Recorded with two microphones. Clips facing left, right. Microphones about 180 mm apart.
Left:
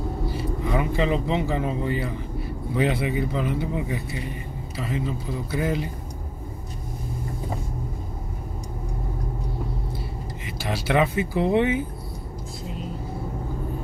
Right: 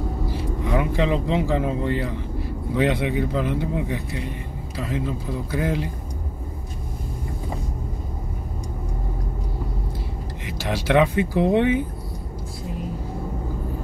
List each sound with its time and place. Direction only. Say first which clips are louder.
0.3 s vehicle: right 2 dB; 75° right (ahead or behind)
1.5 s speech: right 3 dB; 75° right (ahead or behind); by 5.9 s 90° right
10.4 s speech: right 3 dB; 90° right